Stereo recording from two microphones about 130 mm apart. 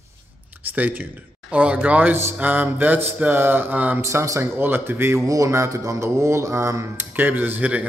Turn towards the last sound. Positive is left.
turn(degrees=-10)  # may be behind; listen again after turning